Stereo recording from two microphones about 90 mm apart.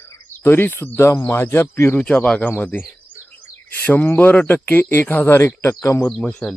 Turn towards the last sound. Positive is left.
turn(degrees=10)  # may be behind; listen again after turning